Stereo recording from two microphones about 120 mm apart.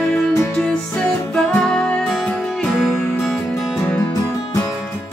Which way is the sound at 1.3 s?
5° left (ahead or behind).